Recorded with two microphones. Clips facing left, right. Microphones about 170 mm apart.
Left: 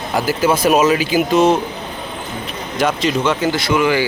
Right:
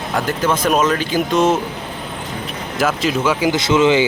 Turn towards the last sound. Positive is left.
turn(degrees=-25)  # may be behind; listen again after turning